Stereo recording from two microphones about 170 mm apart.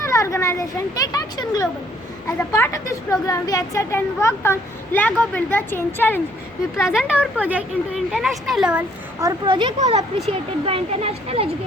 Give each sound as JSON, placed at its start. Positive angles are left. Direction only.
{"t": 0.0, "sound": "a woman's voice", "side_deg": 20}
{"t": 6.7, "sound": "speech", "side_deg": -5}
{"t": 9.2, "sound": "speech", "side_deg": -30}